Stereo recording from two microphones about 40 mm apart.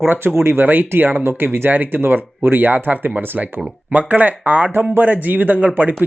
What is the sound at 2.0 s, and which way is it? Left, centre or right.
Speech, right.